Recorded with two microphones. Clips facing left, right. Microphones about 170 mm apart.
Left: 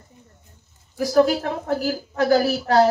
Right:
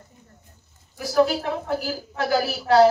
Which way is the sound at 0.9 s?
45° left (ahead or behind).